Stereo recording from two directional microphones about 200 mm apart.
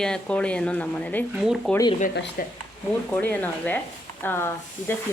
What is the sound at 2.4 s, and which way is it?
Speech, 45° left (ahead or behind).